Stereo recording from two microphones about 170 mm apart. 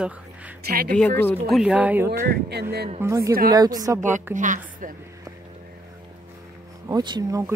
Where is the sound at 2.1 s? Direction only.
75° right (ahead or behind).